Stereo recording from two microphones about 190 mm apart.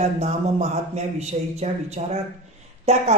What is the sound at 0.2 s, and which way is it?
A man's voice, 35° right (ahead or behind).